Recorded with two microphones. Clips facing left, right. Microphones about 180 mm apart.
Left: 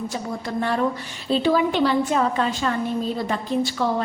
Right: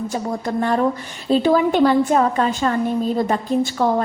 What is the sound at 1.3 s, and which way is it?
A woman's voice, 45° right (ahead or behind).